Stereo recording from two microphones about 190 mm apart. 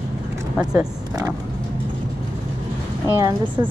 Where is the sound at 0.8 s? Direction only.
20° right (ahead or behind).